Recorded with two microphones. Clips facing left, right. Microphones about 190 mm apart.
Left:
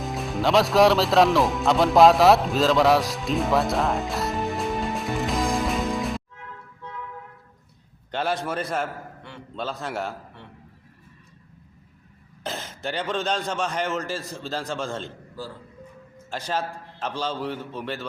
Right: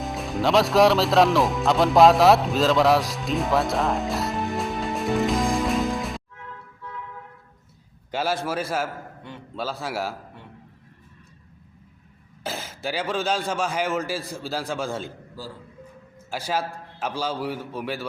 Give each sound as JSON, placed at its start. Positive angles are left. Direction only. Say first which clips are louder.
{"t": 0.0, "sound": "speech", "louder": "even", "side_deg": 0}
{"t": 8.1, "sound": "a man's voice", "louder": "right 1 dB", "side_deg": -5}
{"t": 12.4, "sound": "speech", "louder": "right 1 dB", "side_deg": -5}